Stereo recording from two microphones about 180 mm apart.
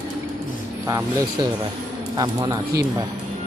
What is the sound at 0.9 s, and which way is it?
Speech, 20° right (ahead or behind).